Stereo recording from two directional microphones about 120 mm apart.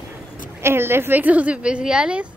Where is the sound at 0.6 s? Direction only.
20° right (ahead or behind).